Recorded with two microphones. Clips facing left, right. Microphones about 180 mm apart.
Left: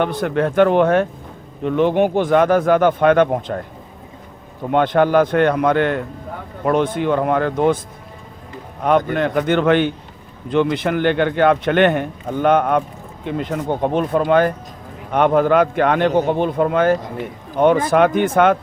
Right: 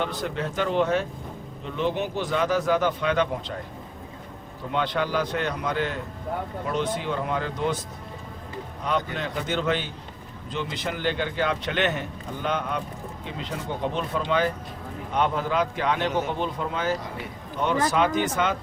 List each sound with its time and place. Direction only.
0.0 s a man's voice: 60° left (ahead or behind)
4.7 s a man's voice: 55° left (ahead or behind)
8.8 s a man's voice: 55° left (ahead or behind)